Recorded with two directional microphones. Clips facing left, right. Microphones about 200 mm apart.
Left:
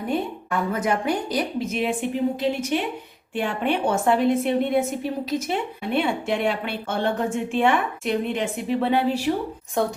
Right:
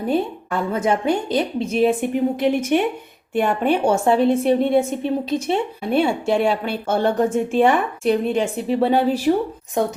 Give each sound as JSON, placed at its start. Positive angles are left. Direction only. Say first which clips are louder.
{"t": 0.1, "sound": "a woman's voice", "louder": "right 4 dB", "side_deg": -30}
{"t": 2.0, "sound": "a woman's voice", "louder": "right 4 dB", "side_deg": -55}
{"t": 3.8, "sound": "a woman's voice", "louder": "right 3 dB", "side_deg": -30}
{"t": 9.8, "sound": "a woman's voice", "louder": "right 3 dB", "side_deg": -20}